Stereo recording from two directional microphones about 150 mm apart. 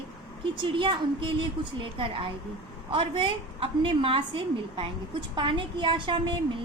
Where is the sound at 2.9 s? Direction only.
35° right (ahead or behind).